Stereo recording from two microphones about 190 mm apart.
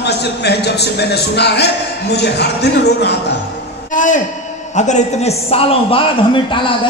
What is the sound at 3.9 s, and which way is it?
A man's voice, 40° left (ahead or behind).